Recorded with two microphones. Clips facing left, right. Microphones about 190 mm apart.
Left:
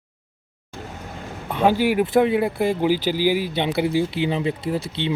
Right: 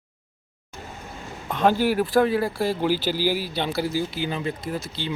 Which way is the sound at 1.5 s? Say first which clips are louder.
Left 2 dB; 10° left (ahead or behind).